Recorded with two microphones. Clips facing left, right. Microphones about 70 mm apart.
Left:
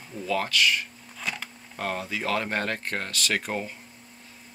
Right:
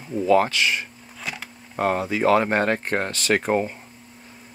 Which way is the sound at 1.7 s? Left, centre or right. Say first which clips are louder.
Right 9 dB; right.